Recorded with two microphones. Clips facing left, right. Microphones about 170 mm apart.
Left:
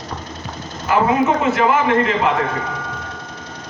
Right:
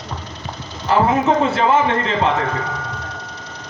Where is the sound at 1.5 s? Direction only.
30° right (ahead or behind).